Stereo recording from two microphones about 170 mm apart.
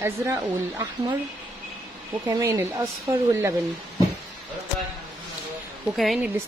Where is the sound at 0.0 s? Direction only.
20° right (ahead or behind).